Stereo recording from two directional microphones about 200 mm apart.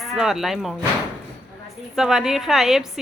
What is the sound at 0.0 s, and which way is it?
Speech, centre (ahead or behind).